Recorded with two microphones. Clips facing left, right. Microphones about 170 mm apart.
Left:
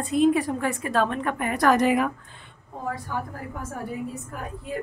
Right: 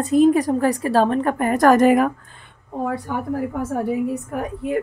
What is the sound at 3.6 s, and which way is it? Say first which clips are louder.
A woman's voice: right 8 dB; 70° right (ahead or behind).